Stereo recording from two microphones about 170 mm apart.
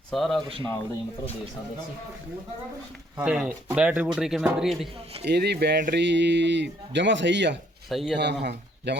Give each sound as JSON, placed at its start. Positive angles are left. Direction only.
{"t": 0.1, "sound": "speech", "side_deg": 0}
{"t": 0.4, "sound": "speech", "side_deg": -30}
{"t": 3.2, "sound": "speech", "side_deg": -5}
{"t": 5.2, "sound": "speech", "side_deg": -75}
{"t": 5.9, "sound": "speech", "side_deg": -90}
{"t": 7.9, "sound": "speech", "side_deg": 0}
{"t": 8.1, "sound": "speech", "side_deg": -90}